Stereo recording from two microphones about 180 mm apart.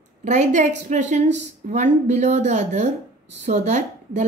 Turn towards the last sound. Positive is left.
turn(degrees=-40)  # may be behind; listen again after turning